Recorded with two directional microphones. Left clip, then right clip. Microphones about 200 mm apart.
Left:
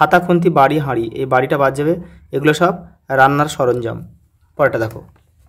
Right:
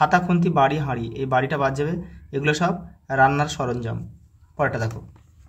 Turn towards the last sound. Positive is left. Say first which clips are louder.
# left 9 dB
turn(degrees=35)  # may be behind; listen again after turning